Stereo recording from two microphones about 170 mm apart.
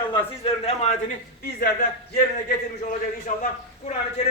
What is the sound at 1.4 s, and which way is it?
Speech, 60° left (ahead or behind).